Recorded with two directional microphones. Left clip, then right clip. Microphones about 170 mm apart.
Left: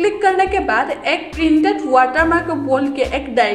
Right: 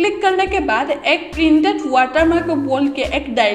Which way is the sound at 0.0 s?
20° right (ahead or behind).